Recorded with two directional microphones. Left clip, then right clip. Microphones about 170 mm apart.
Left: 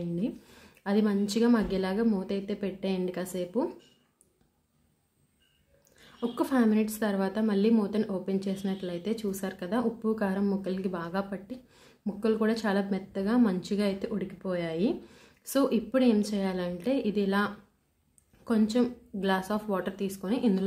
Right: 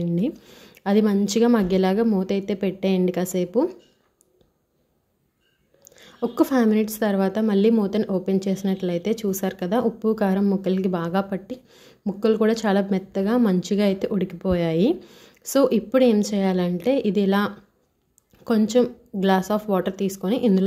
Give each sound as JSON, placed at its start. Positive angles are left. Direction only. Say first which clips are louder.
{"t": 0.5, "sound": "a woman's voice", "louder": "right 8 dB", "side_deg": -35}
{"t": 5.9, "sound": "a woman's voice", "louder": "right 7 dB", "side_deg": -40}
{"t": 11.7, "sound": "a woman's voice", "louder": "right 7 dB", "side_deg": -35}